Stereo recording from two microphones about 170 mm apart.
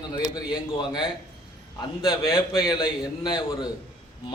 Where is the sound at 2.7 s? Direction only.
25° left (ahead or behind).